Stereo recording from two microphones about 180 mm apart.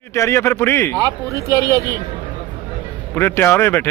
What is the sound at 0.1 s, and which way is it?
Speech, 15° left (ahead or behind).